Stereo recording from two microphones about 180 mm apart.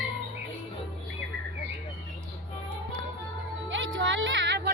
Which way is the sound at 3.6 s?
90° right.